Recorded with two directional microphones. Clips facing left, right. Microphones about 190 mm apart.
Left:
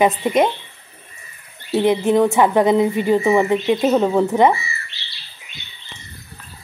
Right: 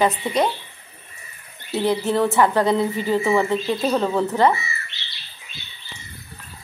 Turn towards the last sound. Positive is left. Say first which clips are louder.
# even
turn(degrees=-20)  # may be behind; listen again after turning